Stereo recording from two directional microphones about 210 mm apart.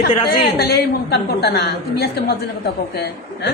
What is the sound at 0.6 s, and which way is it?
A woman's voice, 45° left (ahead or behind).